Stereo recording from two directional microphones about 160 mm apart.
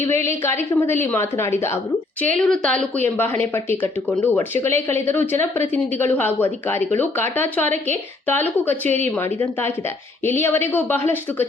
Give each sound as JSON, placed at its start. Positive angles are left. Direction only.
{"t": 0.0, "sound": "speech", "side_deg": 15}
{"t": 2.2, "sound": "speech", "side_deg": 5}
{"t": 7.6, "sound": "speech", "side_deg": -50}
{"t": 8.3, "sound": "speech", "side_deg": 10}